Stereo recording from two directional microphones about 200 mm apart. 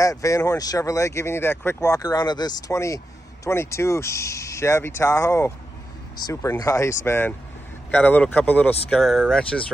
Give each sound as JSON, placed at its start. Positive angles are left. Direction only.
{"t": 0.0, "sound": "speech", "side_deg": 15}